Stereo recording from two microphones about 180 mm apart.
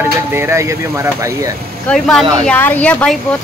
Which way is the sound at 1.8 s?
Centre (ahead or behind).